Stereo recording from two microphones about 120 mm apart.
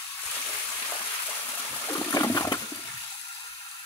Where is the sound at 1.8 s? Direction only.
25° left (ahead or behind).